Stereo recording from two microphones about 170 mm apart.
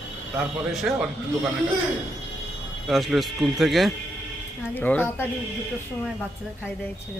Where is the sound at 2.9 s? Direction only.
Centre (ahead or behind).